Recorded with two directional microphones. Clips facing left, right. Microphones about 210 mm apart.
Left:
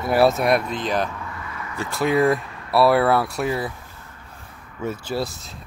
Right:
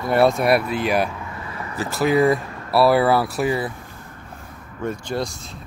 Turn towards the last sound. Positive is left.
turn(degrees=5)  # may be behind; listen again after turning